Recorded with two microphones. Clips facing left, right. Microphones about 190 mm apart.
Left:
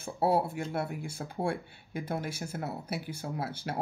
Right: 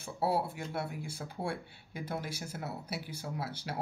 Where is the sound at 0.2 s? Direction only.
50° left (ahead or behind).